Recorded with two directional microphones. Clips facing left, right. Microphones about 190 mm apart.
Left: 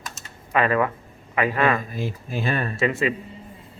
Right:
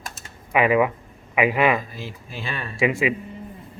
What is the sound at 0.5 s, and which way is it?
A man's voice, 15° right (ahead or behind).